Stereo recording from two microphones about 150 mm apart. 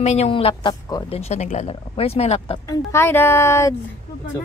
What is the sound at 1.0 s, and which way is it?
Speech, 45° left (ahead or behind).